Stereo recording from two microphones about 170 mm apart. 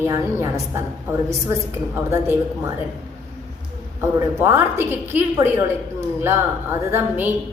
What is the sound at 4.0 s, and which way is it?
A woman's voice, 15° right (ahead or behind).